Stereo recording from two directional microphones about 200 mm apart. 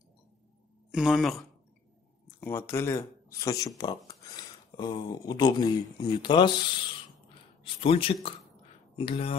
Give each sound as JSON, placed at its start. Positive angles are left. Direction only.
{"t": 0.9, "sound": "speech", "side_deg": 0}
{"t": 2.4, "sound": "speech", "side_deg": 10}
{"t": 7.6, "sound": "speech", "side_deg": 25}